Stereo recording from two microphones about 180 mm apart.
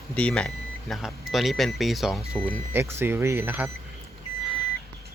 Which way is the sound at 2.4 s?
10° right (ahead or behind).